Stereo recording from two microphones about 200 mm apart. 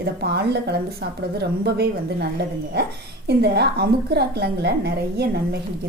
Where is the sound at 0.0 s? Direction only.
55° right (ahead or behind).